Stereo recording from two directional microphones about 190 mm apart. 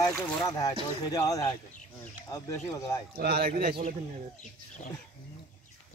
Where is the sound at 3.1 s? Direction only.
55° right (ahead or behind).